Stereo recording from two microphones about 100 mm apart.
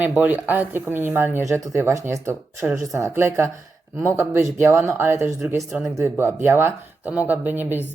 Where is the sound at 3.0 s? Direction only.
25° right (ahead or behind).